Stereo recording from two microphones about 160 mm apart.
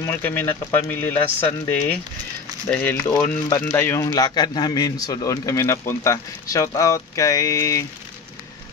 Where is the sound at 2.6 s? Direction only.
10° left (ahead or behind).